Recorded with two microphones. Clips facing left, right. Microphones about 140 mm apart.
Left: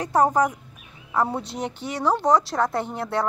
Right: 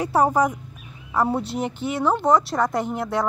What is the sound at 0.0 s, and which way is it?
A woman's voice, 10° right (ahead or behind).